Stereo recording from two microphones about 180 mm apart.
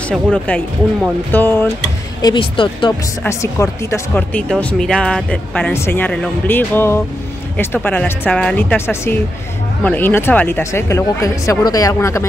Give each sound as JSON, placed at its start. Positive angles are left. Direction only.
{"t": 0.1, "sound": "speech", "side_deg": 5}
{"t": 2.2, "sound": "speech", "side_deg": 25}
{"t": 3.3, "sound": "speech", "side_deg": 15}